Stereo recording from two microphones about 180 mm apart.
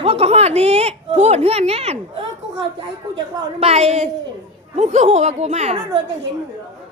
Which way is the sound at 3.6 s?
35° right (ahead or behind).